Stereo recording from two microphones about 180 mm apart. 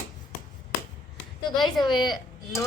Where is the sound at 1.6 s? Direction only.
25° left (ahead or behind).